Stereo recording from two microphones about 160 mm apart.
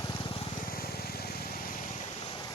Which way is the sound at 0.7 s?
70° left (ahead or behind).